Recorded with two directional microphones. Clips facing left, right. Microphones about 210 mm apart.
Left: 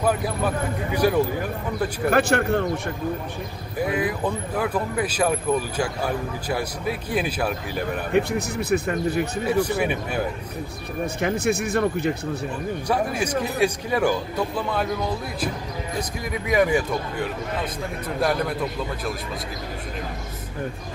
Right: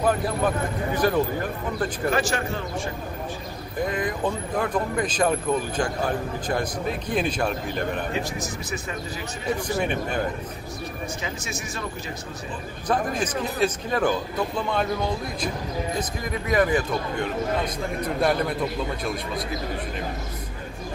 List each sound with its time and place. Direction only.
1.0 s a man's voice: 10° left (ahead or behind)
2.0 s speech: 60° left (ahead or behind)
3.8 s a man's voice: 10° left (ahead or behind)
8.1 s speech: 60° left (ahead or behind)
9.8 s a man's voice: 5° left (ahead or behind)
11.1 s speech: 60° left (ahead or behind)
12.8 s a man's voice: 10° left (ahead or behind)
16.0 s a man's voice: 10° left (ahead or behind)
18.2 s a man's voice: centre (ahead or behind)